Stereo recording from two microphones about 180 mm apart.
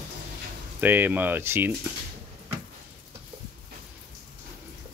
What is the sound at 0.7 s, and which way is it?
Speech, 10° right (ahead or behind).